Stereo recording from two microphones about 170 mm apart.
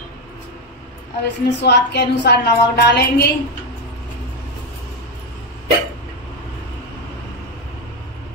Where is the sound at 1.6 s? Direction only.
80° left.